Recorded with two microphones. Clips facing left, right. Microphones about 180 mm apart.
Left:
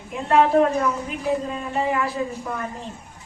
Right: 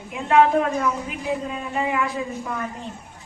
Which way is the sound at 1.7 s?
35° left (ahead or behind).